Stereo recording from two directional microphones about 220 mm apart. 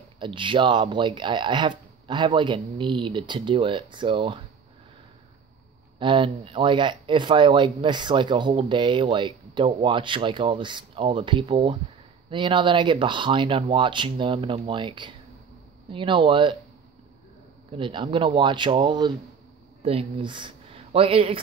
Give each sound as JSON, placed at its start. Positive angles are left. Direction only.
{"t": 0.2, "sound": "speech", "side_deg": -20}
{"t": 5.9, "sound": "speech", "side_deg": -25}
{"t": 17.7, "sound": "speech", "side_deg": -20}